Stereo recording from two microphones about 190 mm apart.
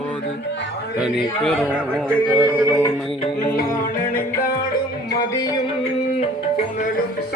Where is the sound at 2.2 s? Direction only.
10° right (ahead or behind).